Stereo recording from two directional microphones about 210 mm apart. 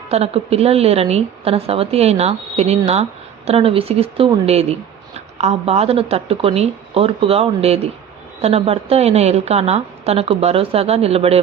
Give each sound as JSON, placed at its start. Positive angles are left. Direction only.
{"t": 0.1, "sound": "a woman's voice", "side_deg": -30}